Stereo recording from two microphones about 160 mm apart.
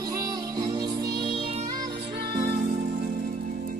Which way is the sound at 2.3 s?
70° right (ahead or behind).